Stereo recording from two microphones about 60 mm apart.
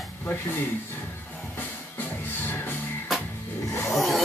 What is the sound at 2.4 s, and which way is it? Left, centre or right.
Music, left.